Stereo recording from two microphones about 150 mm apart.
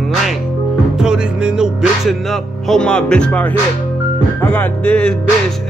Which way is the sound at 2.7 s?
5° left (ahead or behind).